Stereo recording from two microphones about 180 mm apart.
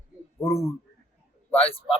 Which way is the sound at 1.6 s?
30° left (ahead or behind).